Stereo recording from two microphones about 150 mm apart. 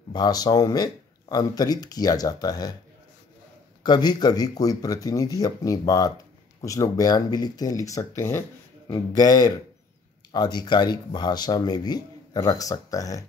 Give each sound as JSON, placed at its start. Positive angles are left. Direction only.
{"t": 0.1, "sound": "speech", "side_deg": 25}
{"t": 3.8, "sound": "speech", "side_deg": 30}